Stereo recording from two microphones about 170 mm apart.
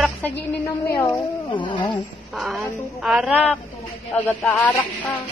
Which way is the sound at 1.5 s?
30° left (ahead or behind).